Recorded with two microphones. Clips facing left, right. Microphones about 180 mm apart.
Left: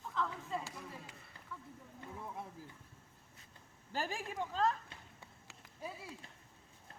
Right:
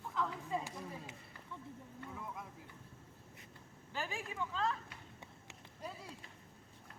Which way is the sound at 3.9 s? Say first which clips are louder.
Left 3 dB; 40° left (ahead or behind).